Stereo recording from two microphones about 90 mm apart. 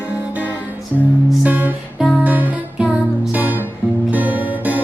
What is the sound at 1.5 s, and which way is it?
Music, 20° right (ahead or behind).